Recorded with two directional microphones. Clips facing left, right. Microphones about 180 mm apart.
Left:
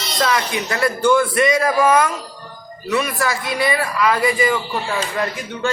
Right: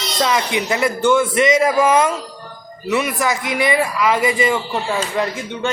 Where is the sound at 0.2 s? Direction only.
20° right (ahead or behind).